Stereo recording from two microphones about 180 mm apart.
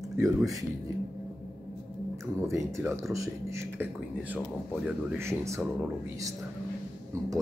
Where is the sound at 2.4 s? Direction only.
15° right (ahead or behind).